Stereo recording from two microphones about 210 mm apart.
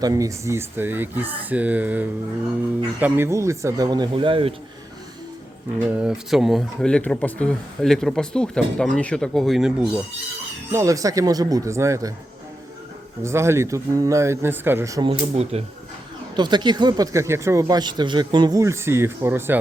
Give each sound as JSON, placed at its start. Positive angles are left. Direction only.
{"t": 0.0, "sound": "speech", "side_deg": -15}
{"t": 5.9, "sound": "speech", "side_deg": -5}
{"t": 10.7, "sound": "speech", "side_deg": -15}
{"t": 13.2, "sound": "speech", "side_deg": -10}